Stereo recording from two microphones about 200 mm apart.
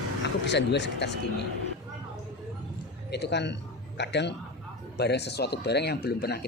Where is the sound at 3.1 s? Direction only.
55° left (ahead or behind).